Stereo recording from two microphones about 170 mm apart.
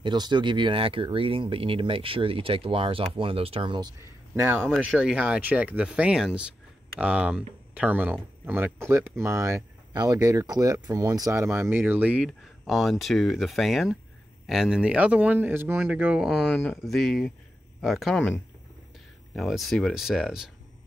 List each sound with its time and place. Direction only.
0.0 s speech: 25° right (ahead or behind)
4.4 s speech: 10° right (ahead or behind)
19.3 s speech: centre (ahead or behind)